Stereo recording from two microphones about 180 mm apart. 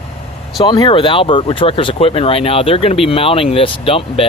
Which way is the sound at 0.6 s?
25° left (ahead or behind).